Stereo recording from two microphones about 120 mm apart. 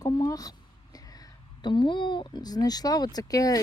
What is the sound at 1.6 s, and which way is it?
Speech, 40° left (ahead or behind).